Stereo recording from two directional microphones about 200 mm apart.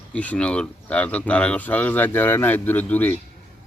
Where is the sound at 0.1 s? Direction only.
5° left (ahead or behind).